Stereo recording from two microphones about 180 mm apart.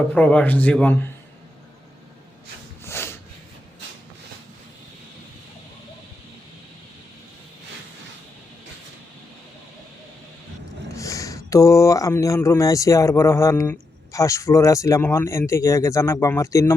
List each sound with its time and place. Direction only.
0.1 s speech: 5° left (ahead or behind)
2.8 s snort: 15° left (ahead or behind)
10.8 s speech: 20° left (ahead or behind)